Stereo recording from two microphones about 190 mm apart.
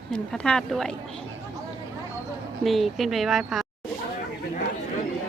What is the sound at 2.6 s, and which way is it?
A woman's voice, centre (ahead or behind).